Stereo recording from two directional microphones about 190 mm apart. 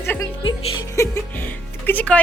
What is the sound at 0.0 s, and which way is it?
Music, 10° left (ahead or behind).